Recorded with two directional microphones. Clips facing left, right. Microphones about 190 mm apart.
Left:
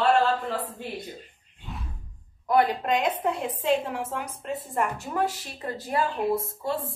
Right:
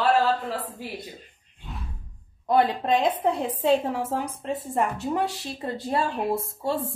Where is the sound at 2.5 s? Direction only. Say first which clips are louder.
Right 1 dB; 30° right (ahead or behind).